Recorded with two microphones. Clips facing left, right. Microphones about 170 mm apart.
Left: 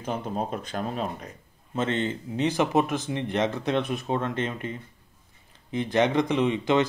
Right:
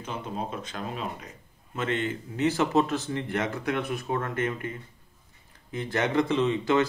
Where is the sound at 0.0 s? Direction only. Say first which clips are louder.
Left 4 dB; 55° left (ahead or behind).